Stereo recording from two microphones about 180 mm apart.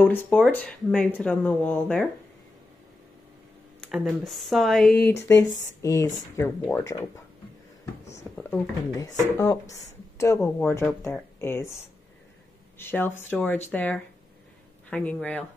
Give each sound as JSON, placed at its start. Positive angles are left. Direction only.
{"t": 0.0, "sound": "speech", "side_deg": 10}
{"t": 3.9, "sound": "speech", "side_deg": 0}
{"t": 5.0, "sound": "speech", "side_deg": 15}
{"t": 7.8, "sound": "whispering", "side_deg": 15}
{"t": 9.0, "sound": "speech", "side_deg": 20}
{"t": 12.7, "sound": "speech", "side_deg": 10}